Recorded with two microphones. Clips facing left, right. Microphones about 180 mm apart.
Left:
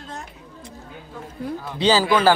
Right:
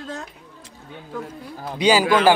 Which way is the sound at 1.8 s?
15° right (ahead or behind).